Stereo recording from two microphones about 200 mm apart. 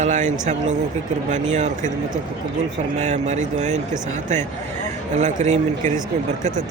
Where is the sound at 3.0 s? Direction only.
35° right (ahead or behind).